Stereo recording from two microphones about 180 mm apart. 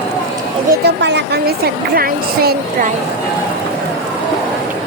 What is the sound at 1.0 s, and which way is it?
A woman's voice, 70° right (ahead or behind).